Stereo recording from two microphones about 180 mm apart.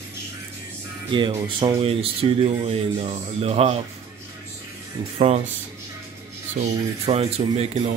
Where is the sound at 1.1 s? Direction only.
25° right (ahead or behind).